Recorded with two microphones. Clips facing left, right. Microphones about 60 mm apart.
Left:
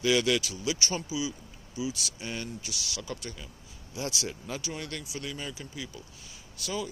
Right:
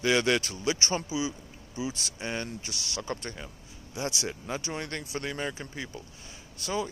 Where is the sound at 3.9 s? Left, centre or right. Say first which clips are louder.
Right 2 dB; right.